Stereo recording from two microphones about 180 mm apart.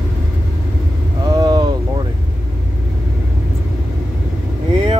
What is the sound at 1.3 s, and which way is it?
Vehicle, 20° right (ahead or behind).